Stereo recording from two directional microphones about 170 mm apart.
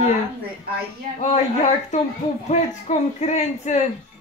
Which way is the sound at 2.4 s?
40° left (ahead or behind).